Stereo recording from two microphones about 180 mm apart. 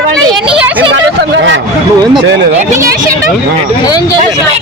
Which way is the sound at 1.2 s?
90° right.